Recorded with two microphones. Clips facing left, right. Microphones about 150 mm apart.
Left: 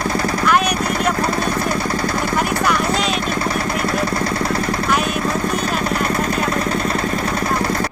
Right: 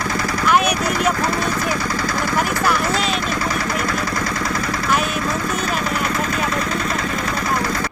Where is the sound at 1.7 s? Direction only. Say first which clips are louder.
Left 2 dB; 30° left (ahead or behind).